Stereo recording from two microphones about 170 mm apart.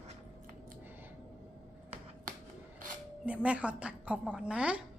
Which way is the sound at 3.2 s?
5° right (ahead or behind).